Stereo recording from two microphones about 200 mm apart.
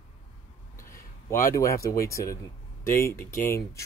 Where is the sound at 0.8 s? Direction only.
15° left (ahead or behind).